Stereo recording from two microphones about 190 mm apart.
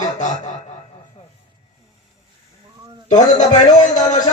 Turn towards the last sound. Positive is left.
turn(degrees=40)  # may be behind; listen again after turning